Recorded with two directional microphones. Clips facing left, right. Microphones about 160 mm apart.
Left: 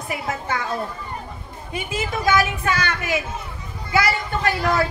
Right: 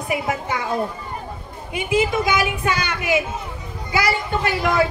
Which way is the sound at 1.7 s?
15° right (ahead or behind).